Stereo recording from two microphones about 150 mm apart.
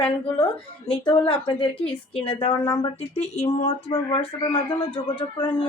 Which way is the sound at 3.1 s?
45° left (ahead or behind).